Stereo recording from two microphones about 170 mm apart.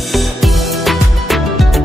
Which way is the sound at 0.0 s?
Centre (ahead or behind).